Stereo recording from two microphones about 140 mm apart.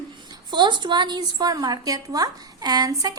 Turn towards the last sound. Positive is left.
turn(degrees=-25)  # may be behind; listen again after turning